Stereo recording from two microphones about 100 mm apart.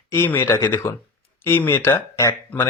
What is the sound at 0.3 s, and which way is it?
Speech, 20° left (ahead or behind).